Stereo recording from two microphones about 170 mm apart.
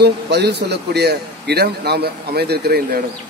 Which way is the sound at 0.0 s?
75° right (ahead or behind).